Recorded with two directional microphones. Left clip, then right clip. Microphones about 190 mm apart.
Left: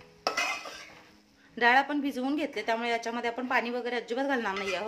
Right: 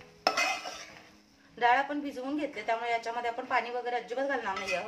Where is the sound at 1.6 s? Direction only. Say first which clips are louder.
Left 3 dB; 55° left (ahead or behind).